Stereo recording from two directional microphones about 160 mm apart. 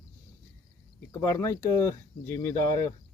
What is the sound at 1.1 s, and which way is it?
Speech, 15° left (ahead or behind).